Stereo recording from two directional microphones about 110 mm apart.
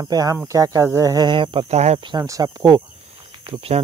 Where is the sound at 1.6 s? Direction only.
90° right.